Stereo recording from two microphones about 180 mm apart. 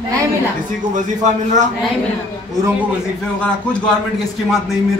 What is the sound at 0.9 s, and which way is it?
Speech, 45° right (ahead or behind).